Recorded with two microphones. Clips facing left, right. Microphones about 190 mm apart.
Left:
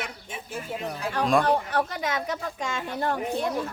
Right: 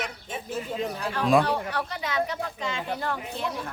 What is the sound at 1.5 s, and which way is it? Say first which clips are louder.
Speech: left 4 dB; 45° left (ahead or behind).